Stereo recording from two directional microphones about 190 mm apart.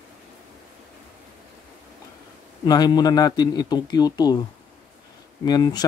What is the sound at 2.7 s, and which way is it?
A man's voice, 20° left (ahead or behind).